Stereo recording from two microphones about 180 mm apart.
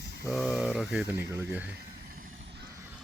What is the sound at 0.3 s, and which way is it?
Speech, centre (ahead or behind).